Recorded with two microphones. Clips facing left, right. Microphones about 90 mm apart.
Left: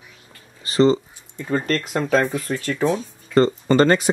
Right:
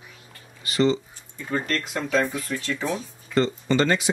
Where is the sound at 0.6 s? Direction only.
35° left (ahead or behind).